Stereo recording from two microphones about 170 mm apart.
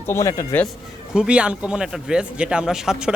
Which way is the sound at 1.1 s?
5° right (ahead or behind).